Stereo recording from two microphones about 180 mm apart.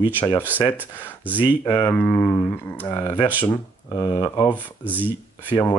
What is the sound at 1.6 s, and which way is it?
Speech, 20° left (ahead or behind).